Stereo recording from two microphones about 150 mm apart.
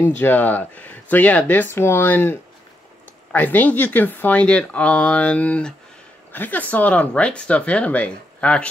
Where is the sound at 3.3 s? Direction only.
10° left (ahead or behind).